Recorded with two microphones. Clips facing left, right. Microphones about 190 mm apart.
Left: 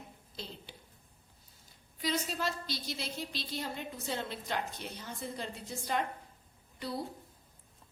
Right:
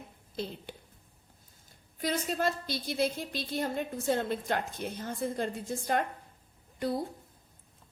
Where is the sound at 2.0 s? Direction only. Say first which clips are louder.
Right 4 dB; 50° right (ahead or behind).